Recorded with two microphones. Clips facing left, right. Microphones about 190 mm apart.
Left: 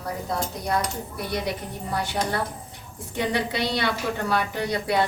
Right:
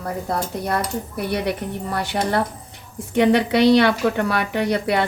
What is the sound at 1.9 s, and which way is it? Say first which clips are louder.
A woman's voice: right 4 dB; 70° right (ahead or behind).